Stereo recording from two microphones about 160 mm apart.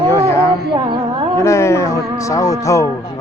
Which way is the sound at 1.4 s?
20° left (ahead or behind).